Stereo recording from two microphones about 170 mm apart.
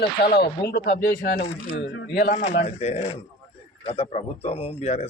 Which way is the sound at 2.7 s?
40° left (ahead or behind).